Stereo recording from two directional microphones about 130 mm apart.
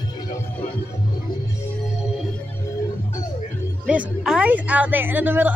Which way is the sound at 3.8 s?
10° right (ahead or behind).